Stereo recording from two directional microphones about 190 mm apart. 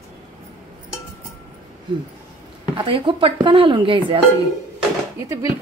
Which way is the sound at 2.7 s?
25° right (ahead or behind).